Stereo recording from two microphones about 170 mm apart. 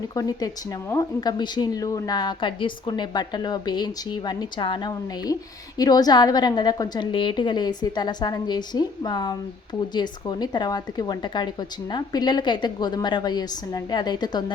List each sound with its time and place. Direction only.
0.1 s speech: 20° left (ahead or behind)